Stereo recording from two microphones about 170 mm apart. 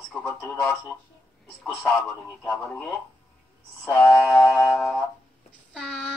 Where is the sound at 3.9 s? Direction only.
Centre (ahead or behind).